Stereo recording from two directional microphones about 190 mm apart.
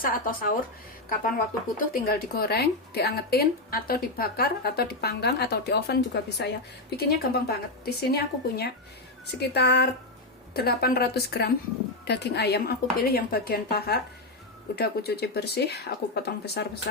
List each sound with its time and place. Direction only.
0.0 s speech: 50° left (ahead or behind)
1.9 s speech: 50° left (ahead or behind)